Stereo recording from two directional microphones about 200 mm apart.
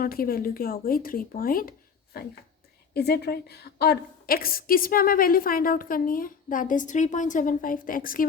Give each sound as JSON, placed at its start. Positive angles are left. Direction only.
{"t": 0.0, "sound": "a woman's voice", "side_deg": 45}
{"t": 2.9, "sound": "a woman's voice", "side_deg": 55}